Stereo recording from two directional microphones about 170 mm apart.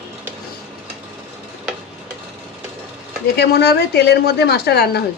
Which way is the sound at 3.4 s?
75° left (ahead or behind).